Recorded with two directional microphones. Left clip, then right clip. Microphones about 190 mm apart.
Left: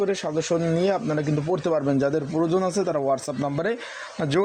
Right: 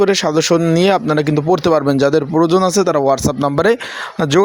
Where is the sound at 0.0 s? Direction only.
35° right (ahead or behind).